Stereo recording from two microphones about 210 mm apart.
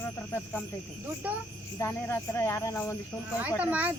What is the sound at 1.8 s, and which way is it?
Speech, 10° left (ahead or behind).